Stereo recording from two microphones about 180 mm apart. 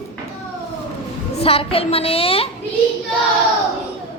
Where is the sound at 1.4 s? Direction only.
30° left (ahead or behind).